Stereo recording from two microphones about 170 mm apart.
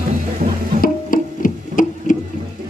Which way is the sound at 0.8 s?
55° left (ahead or behind).